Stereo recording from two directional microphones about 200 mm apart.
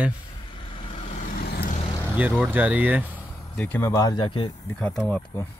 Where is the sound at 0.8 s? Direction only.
30° left (ahead or behind); by 1.8 s 50° left (ahead or behind).